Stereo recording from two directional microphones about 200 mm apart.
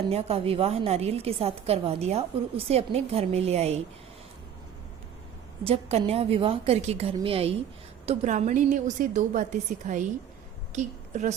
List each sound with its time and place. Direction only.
0.1 s a woman's voice: 30° right (ahead or behind)
5.6 s a woman's voice: 30° right (ahead or behind)